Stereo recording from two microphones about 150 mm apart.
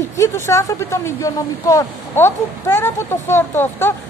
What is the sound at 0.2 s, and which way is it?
A woman's voice, 20° left (ahead or behind).